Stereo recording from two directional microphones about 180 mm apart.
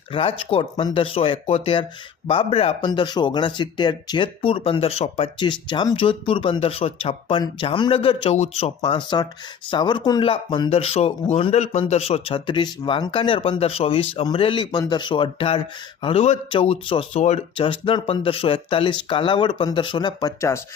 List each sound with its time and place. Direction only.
0.1 s speech: 30° left (ahead or behind)